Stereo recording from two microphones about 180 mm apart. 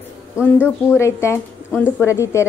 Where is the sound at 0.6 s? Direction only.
15° left (ahead or behind).